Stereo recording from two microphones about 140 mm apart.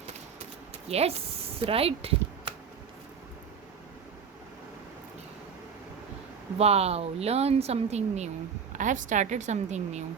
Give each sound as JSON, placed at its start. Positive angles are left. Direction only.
{"t": 0.9, "sound": "speech", "side_deg": -50}
{"t": 6.6, "sound": "speech", "side_deg": -45}
{"t": 8.8, "sound": "a woman's voice", "side_deg": -65}